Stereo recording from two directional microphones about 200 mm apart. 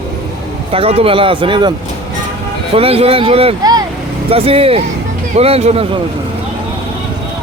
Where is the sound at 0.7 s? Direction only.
30° right (ahead or behind).